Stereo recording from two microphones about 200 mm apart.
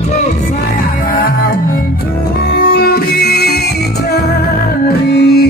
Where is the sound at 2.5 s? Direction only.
50° left (ahead or behind).